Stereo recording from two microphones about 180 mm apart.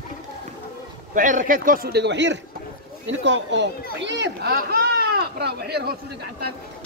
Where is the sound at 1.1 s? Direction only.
50° right (ahead or behind); by 2.3 s 75° right (ahead or behind).